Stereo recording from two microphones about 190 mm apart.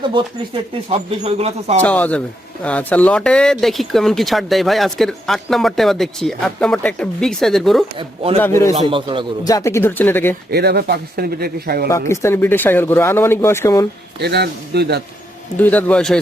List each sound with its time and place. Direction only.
0.1 s speech: 25° right (ahead or behind)
1.8 s speech: 10° left (ahead or behind)
7.9 s speech: 30° right (ahead or behind)
8.4 s speech: 15° left (ahead or behind)
8.7 s a man's voice: 25° right (ahead or behind)
9.5 s speech: 15° left (ahead or behind)
10.5 s speech: 60° right (ahead or behind)
11.9 s speech: 15° left (ahead or behind)
14.2 s speech: 60° right (ahead or behind)
15.5 s speech: 10° left (ahead or behind)